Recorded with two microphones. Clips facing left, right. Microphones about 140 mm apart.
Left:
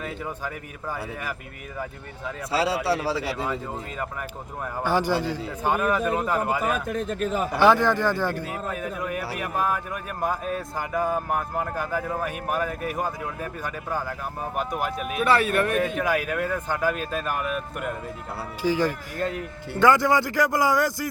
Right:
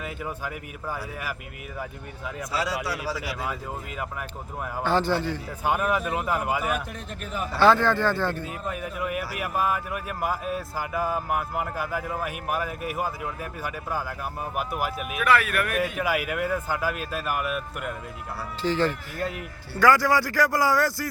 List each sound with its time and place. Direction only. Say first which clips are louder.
0.0 s speech: left 1 dB; 10° right (ahead or behind)
2.5 s a man's voice: left 6 dB; 30° left (ahead or behind)
4.8 s speech: even; 10° left (ahead or behind)
5.6 s speech: left 2 dB; 10° right (ahead or behind)
7.3 s speech: left 2 dB; 40° left (ahead or behind)
7.5 s speech: even; 15° left (ahead or behind)
8.8 s speech: even; 5° right (ahead or behind)
15.1 s a man's voice: left 2 dB; 30° left (ahead or behind)
16.0 s speech: left 2 dB; 10° right (ahead or behind)
18.6 s a man's voice: left 1 dB; 10° left (ahead or behind)